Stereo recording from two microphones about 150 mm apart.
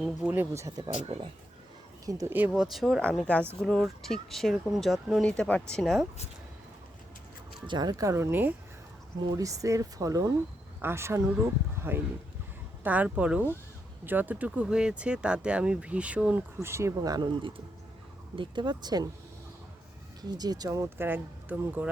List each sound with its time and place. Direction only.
0.0 s speech: 10° right (ahead or behind)
1.0 s speech: 35° right (ahead or behind)
2.0 s speech: 20° right (ahead or behind)
2.5 s speech: centre (ahead or behind)
7.7 s speech: 25° right (ahead or behind)
20.2 s speech: 25° right (ahead or behind)